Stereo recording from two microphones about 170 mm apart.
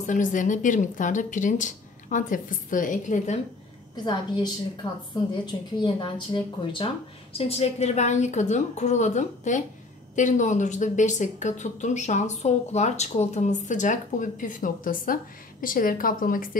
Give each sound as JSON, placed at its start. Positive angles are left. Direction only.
{"t": 0.0, "sound": "a woman's voice", "side_deg": 50}
{"t": 3.9, "sound": "a woman's voice", "side_deg": 25}